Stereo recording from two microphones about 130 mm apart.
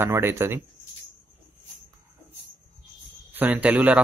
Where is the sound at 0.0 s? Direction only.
20° right (ahead or behind).